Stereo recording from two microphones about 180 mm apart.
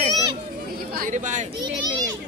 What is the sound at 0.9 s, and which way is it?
Speech, 50° right (ahead or behind).